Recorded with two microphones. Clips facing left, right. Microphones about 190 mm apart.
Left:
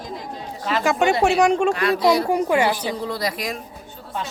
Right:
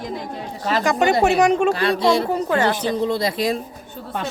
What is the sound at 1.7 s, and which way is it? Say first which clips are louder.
Speech: even; 30° right (ahead or behind).